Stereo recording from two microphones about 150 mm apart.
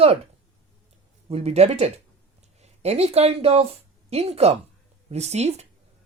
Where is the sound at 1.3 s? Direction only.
45° right (ahead or behind).